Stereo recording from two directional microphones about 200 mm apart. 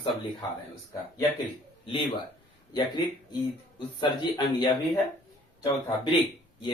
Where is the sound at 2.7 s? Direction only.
20° left (ahead or behind).